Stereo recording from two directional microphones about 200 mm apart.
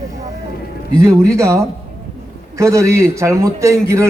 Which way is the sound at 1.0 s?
15° right (ahead or behind).